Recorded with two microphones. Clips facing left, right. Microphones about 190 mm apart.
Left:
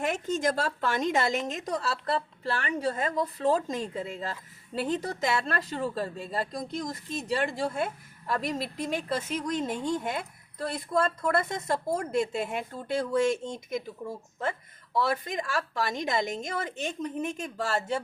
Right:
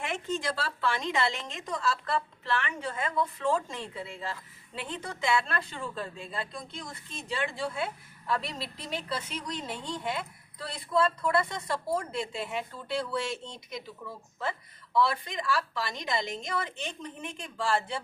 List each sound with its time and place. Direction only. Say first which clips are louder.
0.0 s a woman's voice: left 5 dB; 40° left (ahead or behind)
14.9 s a woman's voice: even; 45° left (ahead or behind)